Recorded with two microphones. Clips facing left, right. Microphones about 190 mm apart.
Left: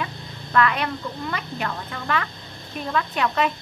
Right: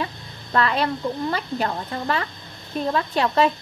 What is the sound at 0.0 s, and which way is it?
A woman's voice, 30° right (ahead or behind).